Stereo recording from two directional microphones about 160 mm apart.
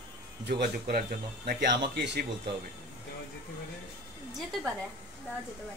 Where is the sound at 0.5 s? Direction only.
75° right (ahead or behind).